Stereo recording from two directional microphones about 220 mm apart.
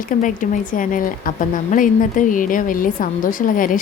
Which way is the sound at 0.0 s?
35° left (ahead or behind).